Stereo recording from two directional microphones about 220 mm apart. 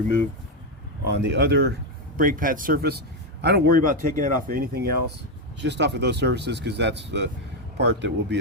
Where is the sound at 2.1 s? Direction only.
40° right (ahead or behind).